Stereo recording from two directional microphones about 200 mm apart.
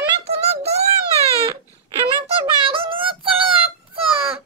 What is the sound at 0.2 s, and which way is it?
Child singing, 30° right (ahead or behind).